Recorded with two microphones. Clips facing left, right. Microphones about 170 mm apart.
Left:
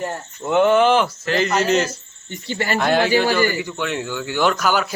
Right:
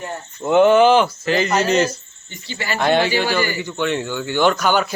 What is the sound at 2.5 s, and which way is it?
Speech, 55° left (ahead or behind).